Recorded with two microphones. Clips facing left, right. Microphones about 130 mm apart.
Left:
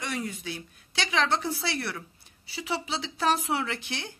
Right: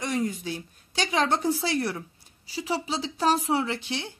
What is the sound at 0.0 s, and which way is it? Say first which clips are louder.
A woman's voice: right 5 dB; 40° right (ahead or behind).